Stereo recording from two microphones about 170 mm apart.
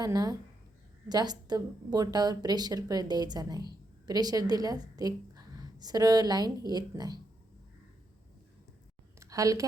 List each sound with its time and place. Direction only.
0.0 s a woman's voice: 25° right (ahead or behind)
9.2 s a woman's voice: 20° right (ahead or behind)